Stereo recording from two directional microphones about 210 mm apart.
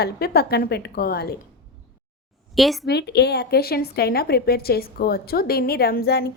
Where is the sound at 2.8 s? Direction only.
50° left (ahead or behind).